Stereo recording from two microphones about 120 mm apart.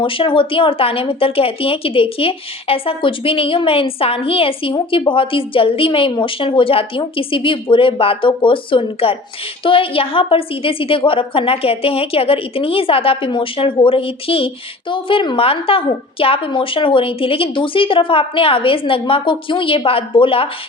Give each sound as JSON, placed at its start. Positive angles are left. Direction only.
{"t": 0.0, "sound": "a woman's voice", "side_deg": 45}